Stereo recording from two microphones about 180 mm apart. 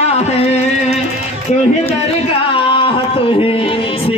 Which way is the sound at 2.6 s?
30° left (ahead or behind).